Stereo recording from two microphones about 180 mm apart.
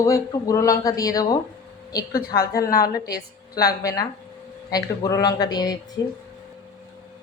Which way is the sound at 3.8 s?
20° left (ahead or behind).